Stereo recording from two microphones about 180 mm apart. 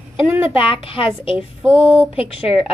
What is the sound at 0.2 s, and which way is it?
A woman's voice, 30° left (ahead or behind).